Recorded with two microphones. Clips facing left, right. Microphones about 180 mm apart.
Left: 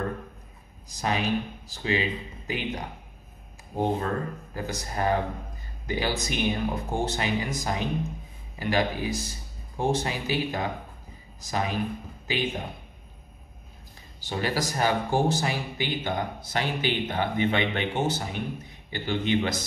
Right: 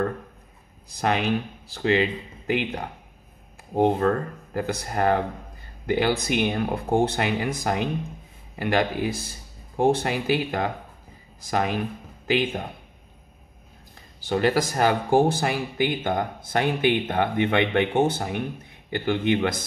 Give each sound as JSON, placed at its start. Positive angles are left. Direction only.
{"t": 0.8, "sound": "speech", "side_deg": -60}
{"t": 14.2, "sound": "speech", "side_deg": -55}